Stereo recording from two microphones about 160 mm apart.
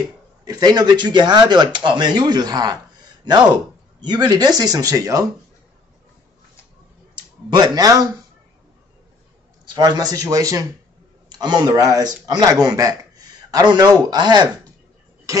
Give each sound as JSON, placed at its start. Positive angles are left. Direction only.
{"t": 0.5, "sound": "speech", "side_deg": -25}
{"t": 4.0, "sound": "speech", "side_deg": -25}
{"t": 7.4, "sound": "speech", "side_deg": -25}
{"t": 9.8, "sound": "speech", "side_deg": -25}